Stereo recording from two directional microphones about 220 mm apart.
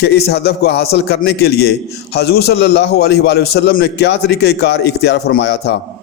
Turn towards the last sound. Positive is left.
turn(degrees=50)  # may be behind; listen again after turning